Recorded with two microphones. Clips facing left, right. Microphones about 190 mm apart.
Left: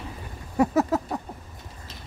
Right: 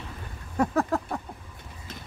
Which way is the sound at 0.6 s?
5° left (ahead or behind).